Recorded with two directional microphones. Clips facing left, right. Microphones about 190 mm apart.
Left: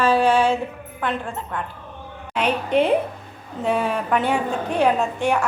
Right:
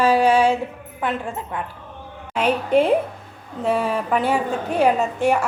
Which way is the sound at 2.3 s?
5° right (ahead or behind).